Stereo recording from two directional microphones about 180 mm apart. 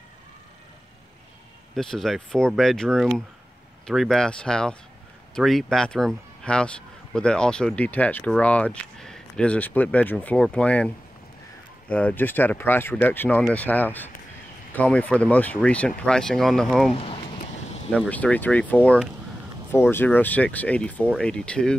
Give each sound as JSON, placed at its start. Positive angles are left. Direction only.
{"t": 1.8, "sound": "speech", "side_deg": 0}
{"t": 11.9, "sound": "speech", "side_deg": 10}
{"t": 16.9, "sound": "a sound", "side_deg": 30}
{"t": 17.9, "sound": "speech", "side_deg": 10}